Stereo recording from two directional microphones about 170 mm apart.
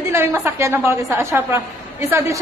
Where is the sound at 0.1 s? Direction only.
15° right (ahead or behind).